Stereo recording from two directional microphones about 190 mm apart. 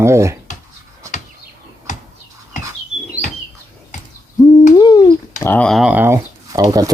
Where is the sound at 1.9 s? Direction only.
40° left (ahead or behind).